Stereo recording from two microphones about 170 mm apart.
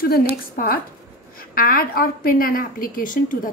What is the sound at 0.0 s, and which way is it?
Speech, 65° left (ahead or behind).